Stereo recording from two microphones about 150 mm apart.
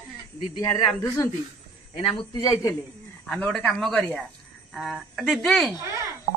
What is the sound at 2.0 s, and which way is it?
Speech, 40° left (ahead or behind).